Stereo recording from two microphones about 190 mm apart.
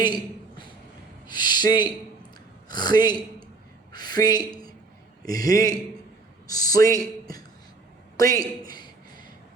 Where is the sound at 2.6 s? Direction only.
20° left (ahead or behind).